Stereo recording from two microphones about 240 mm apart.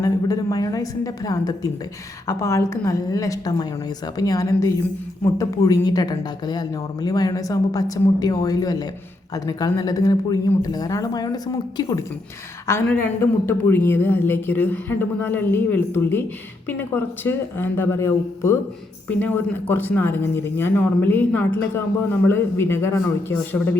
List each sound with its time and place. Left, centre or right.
0.0 s speech: centre